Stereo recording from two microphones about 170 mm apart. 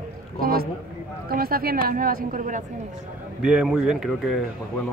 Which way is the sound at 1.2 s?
60° right (ahead or behind).